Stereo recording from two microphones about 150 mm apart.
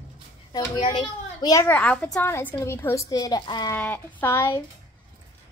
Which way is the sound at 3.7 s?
10° left (ahead or behind).